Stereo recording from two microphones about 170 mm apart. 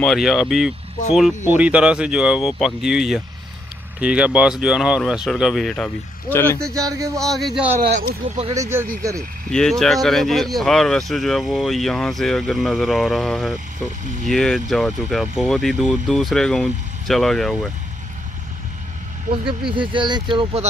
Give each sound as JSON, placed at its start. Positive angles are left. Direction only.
{"t": 0.0, "sound": "speech", "side_deg": 0}
{"t": 6.7, "sound": "speech", "side_deg": -20}
{"t": 7.2, "sound": "speech", "side_deg": 0}
{"t": 7.9, "sound": "speech", "side_deg": -55}
{"t": 8.5, "sound": "speech", "side_deg": -15}
{"t": 9.5, "sound": "speech", "side_deg": 5}
{"t": 19.2, "sound": "speech", "side_deg": -35}